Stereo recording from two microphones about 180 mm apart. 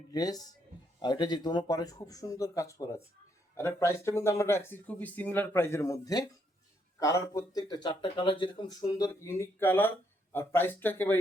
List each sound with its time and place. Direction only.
0.1 s speech: 20° left (ahead or behind)